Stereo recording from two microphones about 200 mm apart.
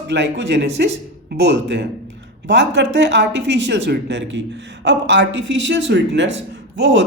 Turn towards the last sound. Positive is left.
turn(degrees=-60)  # may be behind; listen again after turning